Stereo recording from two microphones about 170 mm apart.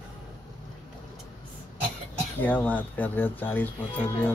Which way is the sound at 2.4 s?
10° left (ahead or behind).